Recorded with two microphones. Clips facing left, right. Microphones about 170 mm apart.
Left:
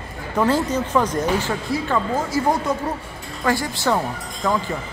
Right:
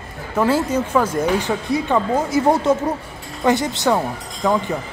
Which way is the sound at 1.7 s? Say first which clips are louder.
Right 4 dB; 20° right (ahead or behind).